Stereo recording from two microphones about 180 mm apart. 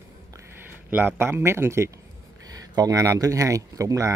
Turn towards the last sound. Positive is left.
turn(degrees=-20)  # may be behind; listen again after turning